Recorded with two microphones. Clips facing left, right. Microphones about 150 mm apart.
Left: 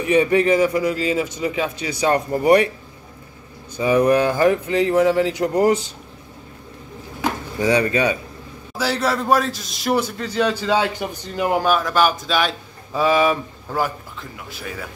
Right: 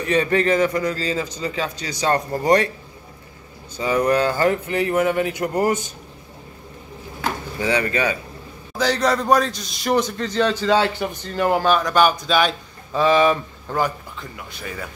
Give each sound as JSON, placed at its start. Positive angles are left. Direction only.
{"t": 0.0, "sound": "a man's voice", "side_deg": 10}
{"t": 3.7, "sound": "a man's voice", "side_deg": 10}
{"t": 7.2, "sound": "a sound", "side_deg": 20}
{"t": 8.7, "sound": "a man's voice", "side_deg": 5}